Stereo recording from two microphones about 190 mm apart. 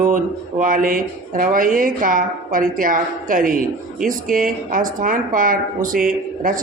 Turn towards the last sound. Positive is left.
turn(degrees=-45)  # may be behind; listen again after turning